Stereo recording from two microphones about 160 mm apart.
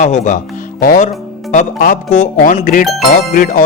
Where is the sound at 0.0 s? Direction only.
50° left (ahead or behind).